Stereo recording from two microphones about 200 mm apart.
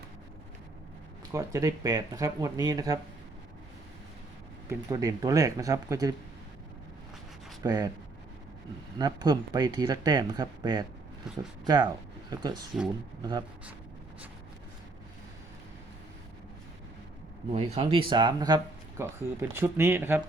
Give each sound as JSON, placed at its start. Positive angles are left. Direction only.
{"t": 1.3, "sound": "speech", "side_deg": -15}
{"t": 4.7, "sound": "speech", "side_deg": -15}
{"t": 7.6, "sound": "speech", "side_deg": -20}
{"t": 9.0, "sound": "speech", "side_deg": -20}
{"t": 17.5, "sound": "speech", "side_deg": -30}